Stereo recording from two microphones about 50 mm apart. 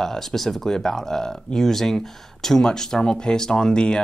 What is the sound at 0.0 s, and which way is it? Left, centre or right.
Speech, centre.